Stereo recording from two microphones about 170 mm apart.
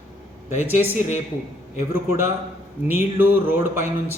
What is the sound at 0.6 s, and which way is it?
A man's voice, 10° right (ahead or behind).